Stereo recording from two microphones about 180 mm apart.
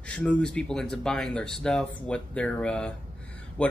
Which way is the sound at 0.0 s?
5° left (ahead or behind).